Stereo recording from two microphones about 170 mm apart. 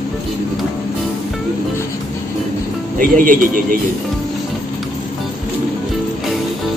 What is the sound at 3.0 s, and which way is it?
Speech, 55° right (ahead or behind).